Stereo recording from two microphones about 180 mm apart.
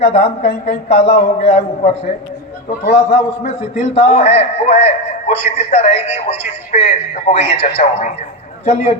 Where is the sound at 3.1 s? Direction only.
35° left (ahead or behind).